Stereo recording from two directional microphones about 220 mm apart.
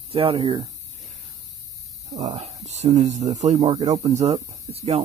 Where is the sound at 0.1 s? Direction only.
25° right (ahead or behind).